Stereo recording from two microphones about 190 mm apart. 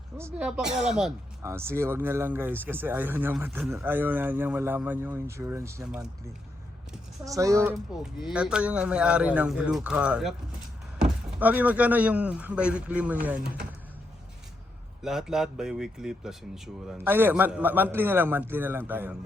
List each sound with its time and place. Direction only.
0.2 s a man's voice: 10° right (ahead or behind)
7.3 s a man's voice: 15° right (ahead or behind)
15.0 s a man's voice: centre (ahead or behind)